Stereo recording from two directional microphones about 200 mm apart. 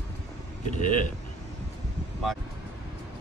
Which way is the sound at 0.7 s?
40° left (ahead or behind).